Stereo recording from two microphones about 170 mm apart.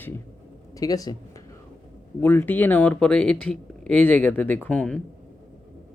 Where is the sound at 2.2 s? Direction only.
10° left (ahead or behind).